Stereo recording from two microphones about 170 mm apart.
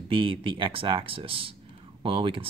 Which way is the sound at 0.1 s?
30° right (ahead or behind).